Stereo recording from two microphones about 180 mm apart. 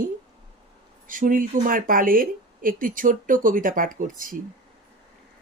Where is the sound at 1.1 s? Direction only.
50° right (ahead or behind).